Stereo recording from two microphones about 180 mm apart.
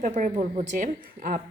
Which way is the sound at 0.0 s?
45° right (ahead or behind).